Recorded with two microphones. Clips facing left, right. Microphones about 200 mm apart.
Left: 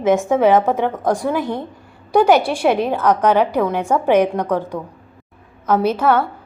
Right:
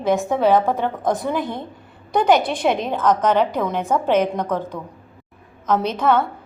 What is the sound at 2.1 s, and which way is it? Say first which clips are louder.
A woman's voice: left 3 dB; 10° left (ahead or behind).